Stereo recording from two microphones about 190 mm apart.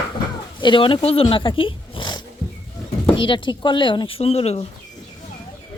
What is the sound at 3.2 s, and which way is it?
Speech, 25° left (ahead or behind).